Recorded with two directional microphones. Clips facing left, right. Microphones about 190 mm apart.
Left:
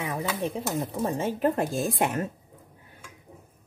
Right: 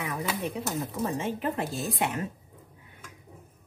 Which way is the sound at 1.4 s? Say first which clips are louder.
Left 5 dB; 50° left (ahead or behind).